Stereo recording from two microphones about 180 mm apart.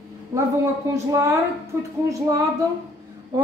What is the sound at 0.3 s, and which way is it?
A woman's voice, 15° right (ahead or behind).